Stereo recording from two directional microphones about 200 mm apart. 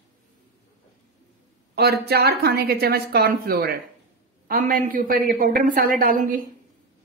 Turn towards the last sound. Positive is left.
turn(degrees=-45)  # may be behind; listen again after turning